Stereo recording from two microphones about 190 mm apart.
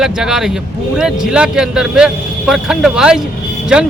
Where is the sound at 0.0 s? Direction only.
5° right (ahead or behind).